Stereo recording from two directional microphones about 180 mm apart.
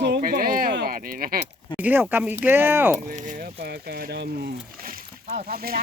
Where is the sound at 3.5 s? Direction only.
60° right (ahead or behind).